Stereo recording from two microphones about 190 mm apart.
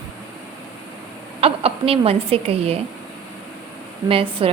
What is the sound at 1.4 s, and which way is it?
A woman's voice, 30° right (ahead or behind).